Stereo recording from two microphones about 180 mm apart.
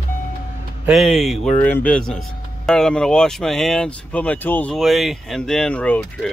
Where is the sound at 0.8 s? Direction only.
Centre (ahead or behind).